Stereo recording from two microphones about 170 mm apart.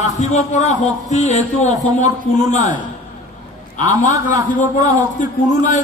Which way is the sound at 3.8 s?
45° left (ahead or behind).